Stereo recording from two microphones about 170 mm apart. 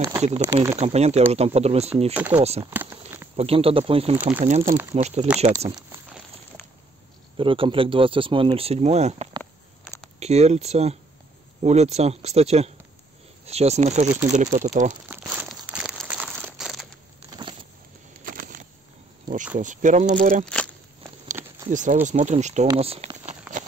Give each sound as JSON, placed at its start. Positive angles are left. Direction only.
{"t": 0.2, "sound": "speech", "side_deg": -40}
{"t": 2.7, "sound": "speech", "side_deg": -15}
{"t": 3.3, "sound": "speech", "side_deg": -35}
{"t": 4.2, "sound": "speech", "side_deg": -10}
{"t": 4.5, "sound": "speech", "side_deg": -45}
{"t": 7.3, "sound": "speech", "side_deg": -30}
{"t": 15.0, "sound": "crumpling", "side_deg": -10}
{"t": 17.3, "sound": "a sound", "side_deg": -25}
{"t": 18.2, "sound": "a sound", "side_deg": -55}
{"t": 19.5, "sound": "speech", "side_deg": -50}
{"t": 20.4, "sound": "a sound", "side_deg": 5}
{"t": 21.6, "sound": "speech", "side_deg": -50}